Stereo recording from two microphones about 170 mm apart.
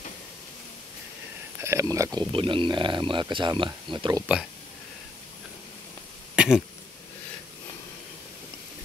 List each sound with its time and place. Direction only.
1.6 s speech: 15° right (ahead or behind)
2.1 s speech: 30° right (ahead or behind)
6.3 s cough: 5° right (ahead or behind)